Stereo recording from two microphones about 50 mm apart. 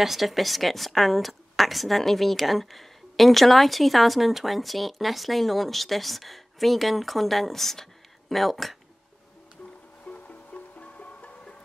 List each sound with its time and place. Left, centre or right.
0.0 s a woman's voice: centre
10.0 s music: left